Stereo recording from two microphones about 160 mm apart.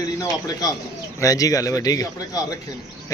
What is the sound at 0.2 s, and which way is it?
A man's voice, 25° left (ahead or behind).